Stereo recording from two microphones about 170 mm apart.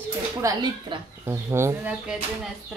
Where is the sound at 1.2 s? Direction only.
15° right (ahead or behind).